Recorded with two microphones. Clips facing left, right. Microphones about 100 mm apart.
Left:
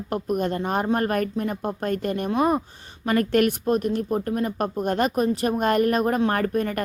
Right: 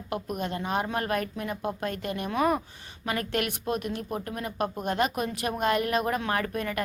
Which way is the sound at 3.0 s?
45° left (ahead or behind).